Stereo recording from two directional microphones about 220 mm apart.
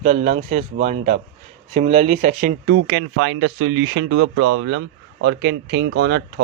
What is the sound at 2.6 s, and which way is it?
Speech, 60° right (ahead or behind).